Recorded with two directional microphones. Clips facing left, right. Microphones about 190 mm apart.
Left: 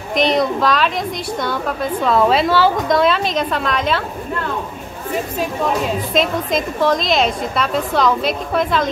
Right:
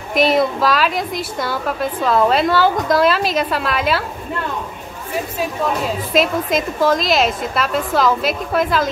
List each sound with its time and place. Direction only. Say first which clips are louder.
0.1 s a woman's voice: right 1 dB; 5° right (ahead or behind)
6.1 s a woman's voice: right 2 dB; 5° right (ahead or behind)